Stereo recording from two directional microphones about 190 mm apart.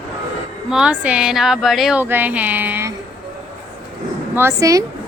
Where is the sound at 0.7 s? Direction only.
5° right (ahead or behind).